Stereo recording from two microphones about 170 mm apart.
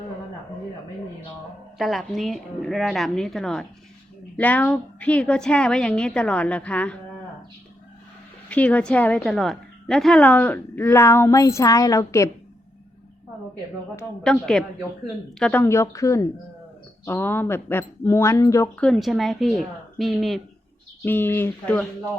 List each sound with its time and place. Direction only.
1.8 s a woman's voice: centre (ahead or behind)
8.4 s a woman's voice: 10° left (ahead or behind)
14.3 s a woman's voice: 5° left (ahead or behind)
18.9 s a woman's voice: centre (ahead or behind)
21.0 s a woman's voice: 10° left (ahead or behind)